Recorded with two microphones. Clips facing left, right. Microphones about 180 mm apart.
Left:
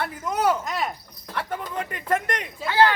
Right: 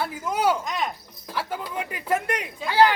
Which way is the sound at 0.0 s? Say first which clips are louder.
Even; 5° right (ahead or behind).